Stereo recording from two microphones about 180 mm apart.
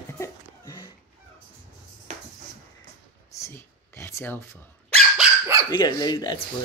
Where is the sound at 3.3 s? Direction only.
15° left (ahead or behind).